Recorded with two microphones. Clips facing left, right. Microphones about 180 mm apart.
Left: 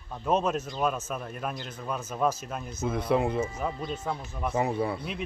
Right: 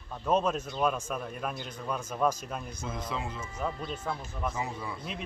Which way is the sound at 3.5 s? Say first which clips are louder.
Left 2 dB; 10° left (ahead or behind).